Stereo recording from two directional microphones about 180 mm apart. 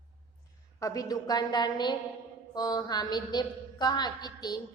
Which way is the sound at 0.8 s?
20° left (ahead or behind).